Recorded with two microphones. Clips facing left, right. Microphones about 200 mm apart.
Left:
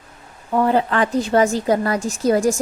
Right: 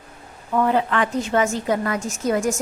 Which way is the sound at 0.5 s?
35° left (ahead or behind).